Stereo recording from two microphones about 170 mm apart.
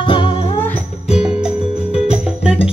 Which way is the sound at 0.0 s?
30° left (ahead or behind).